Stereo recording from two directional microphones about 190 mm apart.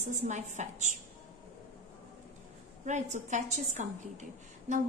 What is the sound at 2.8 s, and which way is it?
A woman's voice, 40° right (ahead or behind).